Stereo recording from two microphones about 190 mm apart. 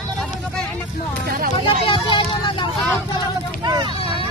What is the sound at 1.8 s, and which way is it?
Vehicle, 25° left (ahead or behind).